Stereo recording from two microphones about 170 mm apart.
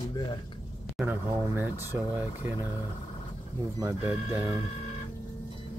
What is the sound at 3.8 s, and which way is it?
Speech, 15° right (ahead or behind).